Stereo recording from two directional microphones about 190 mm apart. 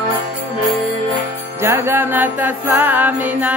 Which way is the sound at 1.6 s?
10° right (ahead or behind).